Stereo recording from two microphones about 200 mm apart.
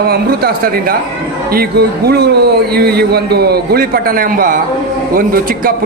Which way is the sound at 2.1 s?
55° right (ahead or behind).